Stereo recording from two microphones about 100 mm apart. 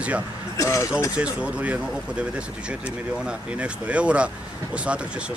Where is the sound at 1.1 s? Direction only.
15° right (ahead or behind).